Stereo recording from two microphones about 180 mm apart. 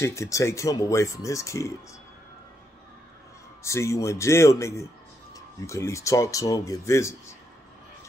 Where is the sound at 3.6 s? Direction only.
15° left (ahead or behind).